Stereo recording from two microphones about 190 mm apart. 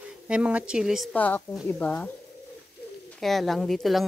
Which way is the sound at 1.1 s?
10° left (ahead or behind).